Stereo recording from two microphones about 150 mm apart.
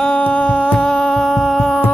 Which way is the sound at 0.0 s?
10° left (ahead or behind).